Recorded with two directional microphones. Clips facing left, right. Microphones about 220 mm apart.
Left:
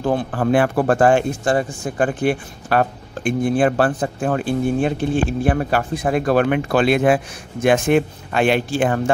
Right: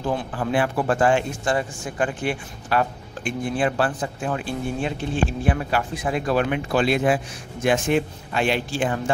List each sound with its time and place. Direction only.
0.0 s a man's voice: 50° left (ahead or behind)